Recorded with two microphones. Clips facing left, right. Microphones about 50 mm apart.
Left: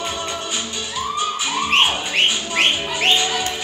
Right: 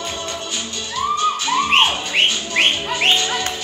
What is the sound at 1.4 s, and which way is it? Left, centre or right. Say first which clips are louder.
Music: even; centre.